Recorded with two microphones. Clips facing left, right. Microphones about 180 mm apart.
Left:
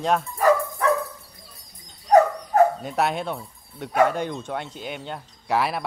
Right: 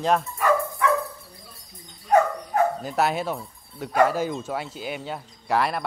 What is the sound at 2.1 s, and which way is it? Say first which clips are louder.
Dog: left 3 dB; 40° left (ahead or behind).